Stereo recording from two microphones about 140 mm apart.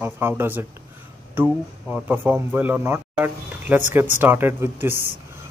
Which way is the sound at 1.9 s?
10° right (ahead or behind).